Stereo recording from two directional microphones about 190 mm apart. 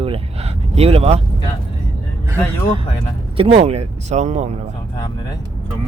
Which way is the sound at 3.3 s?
30° right (ahead or behind).